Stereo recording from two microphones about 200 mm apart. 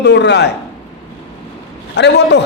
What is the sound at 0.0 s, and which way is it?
Speech, 60° left (ahead or behind).